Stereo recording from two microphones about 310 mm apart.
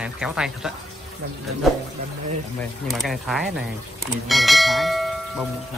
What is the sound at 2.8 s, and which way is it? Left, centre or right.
Speech, centre.